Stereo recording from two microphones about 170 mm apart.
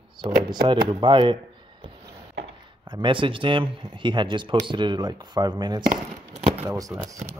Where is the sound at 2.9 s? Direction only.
30° right (ahead or behind).